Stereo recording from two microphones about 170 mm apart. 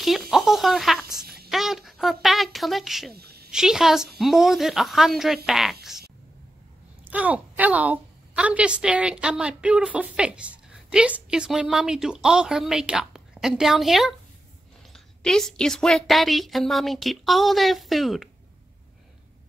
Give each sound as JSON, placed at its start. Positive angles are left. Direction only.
{"t": 0.0, "sound": "a sound", "side_deg": 0}
{"t": 3.1, "sound": "a child's voice", "side_deg": -70}
{"t": 3.5, "sound": "a woman's voice", "side_deg": 0}
{"t": 7.1, "sound": "a woman's voice", "side_deg": -10}